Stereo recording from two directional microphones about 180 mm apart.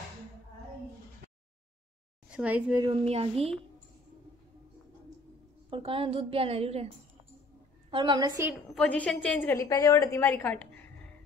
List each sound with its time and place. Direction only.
2.3 s a woman's voice: 10° right (ahead or behind)
2.8 s a woman's voice: 30° right (ahead or behind)
5.7 s a woman's voice: 30° right (ahead or behind)
7.9 s a woman's voice: 25° right (ahead or behind)
8.7 s a woman's voice: 5° left (ahead or behind)